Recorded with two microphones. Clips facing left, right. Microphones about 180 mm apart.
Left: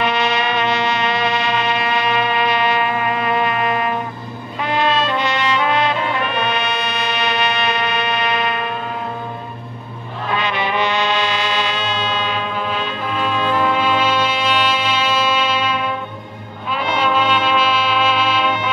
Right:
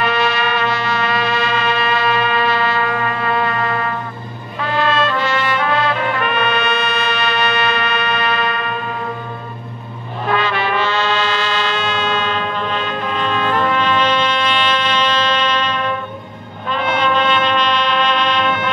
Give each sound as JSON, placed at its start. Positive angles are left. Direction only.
{"t": 0.0, "sound": "music", "side_deg": 20}
{"t": 10.4, "sound": "music", "side_deg": 15}
{"t": 11.8, "sound": "music", "side_deg": -55}
{"t": 12.3, "sound": "music", "side_deg": 10}
{"t": 13.6, "sound": "brass instrument", "side_deg": 10}
{"t": 17.0, "sound": "music", "side_deg": 5}